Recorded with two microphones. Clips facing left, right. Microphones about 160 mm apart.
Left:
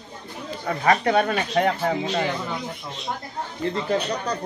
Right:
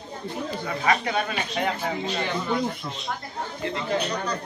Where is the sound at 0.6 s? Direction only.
45° left (ahead or behind).